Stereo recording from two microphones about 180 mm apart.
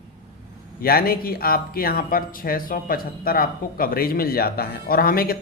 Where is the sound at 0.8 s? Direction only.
55° left (ahead or behind).